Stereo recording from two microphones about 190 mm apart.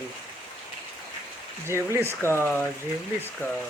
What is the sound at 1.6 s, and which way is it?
Speech, 15° right (ahead or behind).